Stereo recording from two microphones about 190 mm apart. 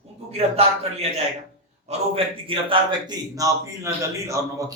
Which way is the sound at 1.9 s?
30° right (ahead or behind).